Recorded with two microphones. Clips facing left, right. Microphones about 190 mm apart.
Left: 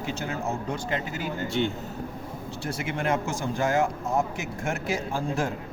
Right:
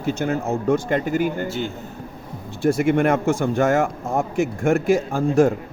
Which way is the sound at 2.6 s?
50° right (ahead or behind).